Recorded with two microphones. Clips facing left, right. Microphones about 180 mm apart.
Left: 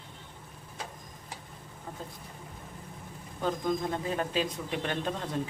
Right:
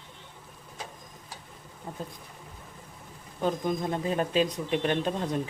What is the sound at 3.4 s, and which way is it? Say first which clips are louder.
Speech: right 2 dB; 20° right (ahead or behind).